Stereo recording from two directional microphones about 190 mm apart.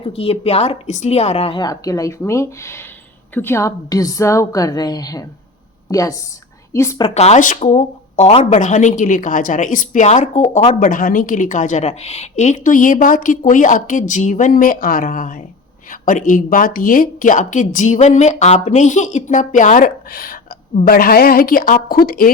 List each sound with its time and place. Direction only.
0.0 s a woman's voice: 30° left (ahead or behind)
7.0 s a woman's voice: 35° left (ahead or behind); by 22.3 s 50° left (ahead or behind)